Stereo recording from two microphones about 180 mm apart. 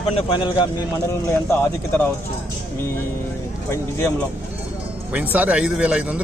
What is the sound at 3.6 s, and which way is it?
Speech, 15° left (ahead or behind).